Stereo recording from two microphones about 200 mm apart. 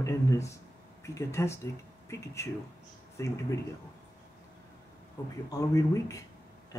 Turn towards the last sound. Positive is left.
turn(degrees=15)  # may be behind; listen again after turning